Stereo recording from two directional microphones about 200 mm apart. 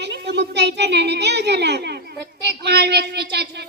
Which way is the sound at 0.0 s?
60° right (ahead or behind).